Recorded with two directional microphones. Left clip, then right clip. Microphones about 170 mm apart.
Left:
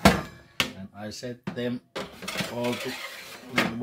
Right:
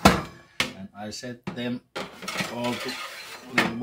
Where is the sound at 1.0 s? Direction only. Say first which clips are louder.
Even; 30° left (ahead or behind).